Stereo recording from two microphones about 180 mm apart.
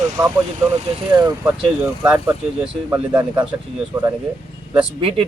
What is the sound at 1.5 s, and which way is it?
A man's voice, 5° right (ahead or behind).